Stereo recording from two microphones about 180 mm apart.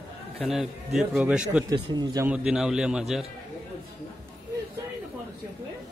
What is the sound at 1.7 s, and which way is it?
Speech, 20° right (ahead or behind).